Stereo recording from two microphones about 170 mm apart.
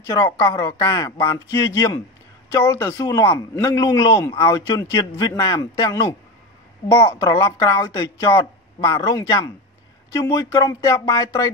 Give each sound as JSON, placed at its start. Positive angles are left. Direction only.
{"t": 0.1, "sound": "a man's voice", "side_deg": 15}
{"t": 7.2, "sound": "a man's voice", "side_deg": 25}
{"t": 10.6, "sound": "a man's voice", "side_deg": 20}